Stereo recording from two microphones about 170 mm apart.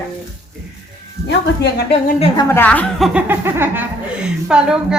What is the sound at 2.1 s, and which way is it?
Speech, 35° left (ahead or behind).